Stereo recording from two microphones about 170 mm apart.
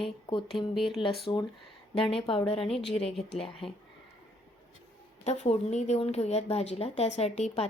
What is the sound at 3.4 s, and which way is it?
Speech, 35° left (ahead or behind).